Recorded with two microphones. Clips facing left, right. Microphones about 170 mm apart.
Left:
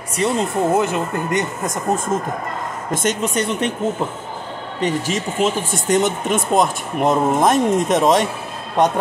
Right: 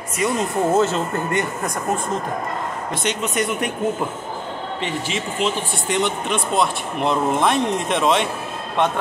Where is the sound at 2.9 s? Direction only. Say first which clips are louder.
Left 5 dB; 45° left (ahead or behind).